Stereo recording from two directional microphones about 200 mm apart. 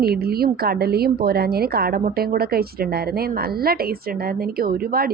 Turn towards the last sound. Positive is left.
turn(degrees=-50)  # may be behind; listen again after turning